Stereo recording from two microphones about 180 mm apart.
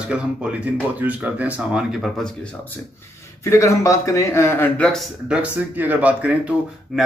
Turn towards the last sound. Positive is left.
turn(degrees=-5)  # may be behind; listen again after turning